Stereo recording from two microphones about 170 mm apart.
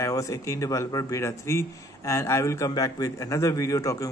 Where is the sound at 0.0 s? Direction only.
20° left (ahead or behind).